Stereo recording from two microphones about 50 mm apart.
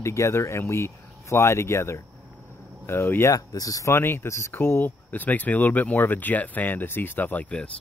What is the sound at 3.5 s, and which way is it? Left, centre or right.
Speech, left.